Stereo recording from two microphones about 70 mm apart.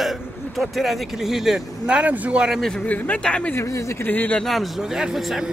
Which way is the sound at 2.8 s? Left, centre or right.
Left.